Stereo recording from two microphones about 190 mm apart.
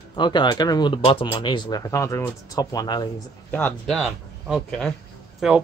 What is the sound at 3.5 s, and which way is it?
Speech, 10° left (ahead or behind).